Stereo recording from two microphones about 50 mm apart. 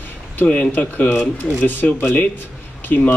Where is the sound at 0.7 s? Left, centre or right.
Left.